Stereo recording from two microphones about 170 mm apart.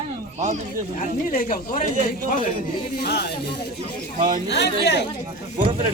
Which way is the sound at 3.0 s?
70° left (ahead or behind).